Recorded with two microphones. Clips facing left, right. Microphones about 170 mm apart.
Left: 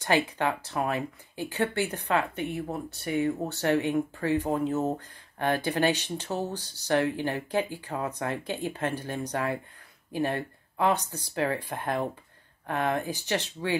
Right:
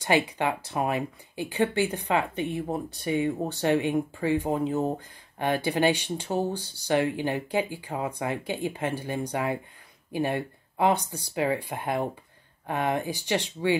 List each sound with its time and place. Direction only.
0.4 s speech: 15° right (ahead or behind)